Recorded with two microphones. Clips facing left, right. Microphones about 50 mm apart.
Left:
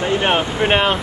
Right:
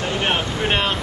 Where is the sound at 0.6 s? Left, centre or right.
Centre.